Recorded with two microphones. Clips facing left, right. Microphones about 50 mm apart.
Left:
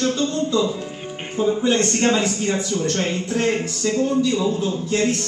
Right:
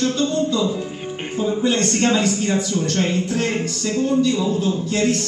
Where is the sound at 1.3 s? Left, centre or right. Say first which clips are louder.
Left 1 dB; centre.